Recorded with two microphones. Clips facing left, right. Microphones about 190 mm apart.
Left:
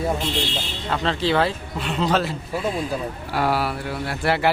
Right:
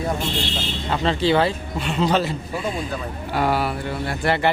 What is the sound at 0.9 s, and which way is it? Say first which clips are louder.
Speech: right 2 dB; 5° right (ahead or behind).